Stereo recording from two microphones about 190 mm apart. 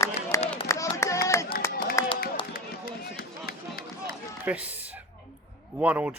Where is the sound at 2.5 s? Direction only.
50° left (ahead or behind).